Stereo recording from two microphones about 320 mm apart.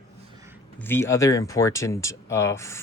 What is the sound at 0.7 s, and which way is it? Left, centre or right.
Speech, centre.